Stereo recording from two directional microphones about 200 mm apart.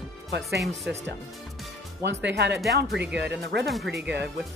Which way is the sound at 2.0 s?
60° right (ahead or behind).